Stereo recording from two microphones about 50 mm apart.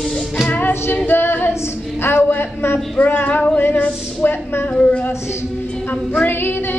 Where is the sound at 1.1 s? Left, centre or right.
Left.